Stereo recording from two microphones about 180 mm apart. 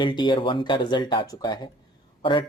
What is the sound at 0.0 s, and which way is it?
Speech, 25° left (ahead or behind).